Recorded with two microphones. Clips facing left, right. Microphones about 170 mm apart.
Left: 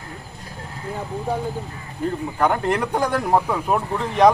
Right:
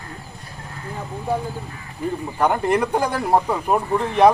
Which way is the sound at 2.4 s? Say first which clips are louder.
Right 2 dB; 10° right (ahead or behind).